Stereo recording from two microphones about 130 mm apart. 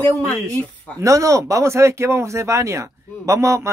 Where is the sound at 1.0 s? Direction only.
25° right (ahead or behind).